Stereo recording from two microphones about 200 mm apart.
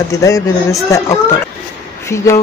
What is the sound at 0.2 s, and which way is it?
Speech, 15° left (ahead or behind).